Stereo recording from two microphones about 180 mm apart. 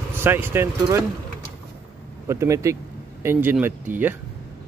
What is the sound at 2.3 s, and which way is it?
Speech, 15° right (ahead or behind).